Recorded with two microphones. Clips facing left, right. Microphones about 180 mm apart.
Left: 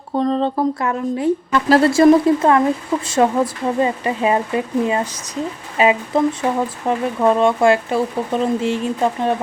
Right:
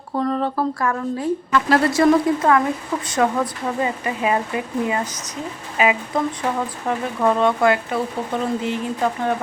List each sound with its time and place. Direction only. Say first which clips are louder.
0.1 s speech: left 4 dB; 25° left (ahead or behind)
6.8 s speech: left 3 dB; 20° left (ahead or behind)